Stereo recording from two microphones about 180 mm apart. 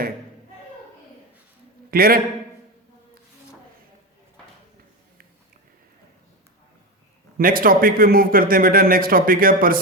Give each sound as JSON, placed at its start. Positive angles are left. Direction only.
{"t": 1.9, "sound": "a man's voice", "side_deg": -55}
{"t": 7.3, "sound": "a man's voice", "side_deg": -55}